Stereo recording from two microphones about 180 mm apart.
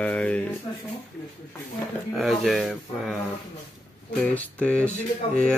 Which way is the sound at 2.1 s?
Centre (ahead or behind).